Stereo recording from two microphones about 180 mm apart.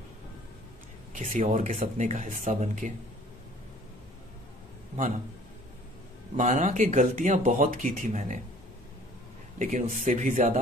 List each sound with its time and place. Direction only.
1.1 s speech: 45° right (ahead or behind)
6.3 s speech: 45° right (ahead or behind)
9.6 s speech: 45° right (ahead or behind)